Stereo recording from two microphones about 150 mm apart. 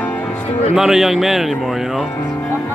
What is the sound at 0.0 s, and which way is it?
Music, 10° left (ahead or behind).